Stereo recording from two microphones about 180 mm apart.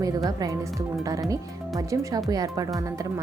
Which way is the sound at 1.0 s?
20° right (ahead or behind).